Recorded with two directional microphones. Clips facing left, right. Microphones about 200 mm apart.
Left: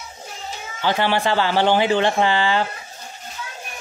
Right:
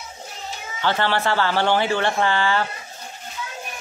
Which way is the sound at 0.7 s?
15° left (ahead or behind).